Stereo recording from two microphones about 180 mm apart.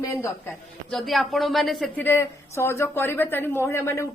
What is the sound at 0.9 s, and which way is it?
A woman's voice, centre (ahead or behind).